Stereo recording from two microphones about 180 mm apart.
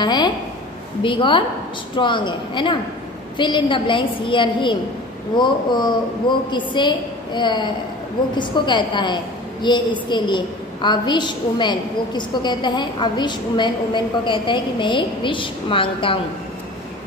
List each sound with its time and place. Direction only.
0.0 s a woman's voice: 25° left (ahead or behind)